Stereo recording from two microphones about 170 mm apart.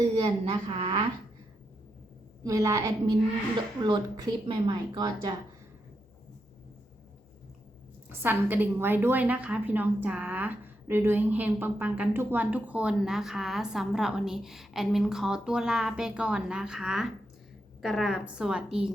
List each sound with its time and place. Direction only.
0.2 s a woman's voice: 35° right (ahead or behind)
2.4 s a woman's voice: 20° right (ahead or behind)
8.2 s a woman's voice: 10° right (ahead or behind)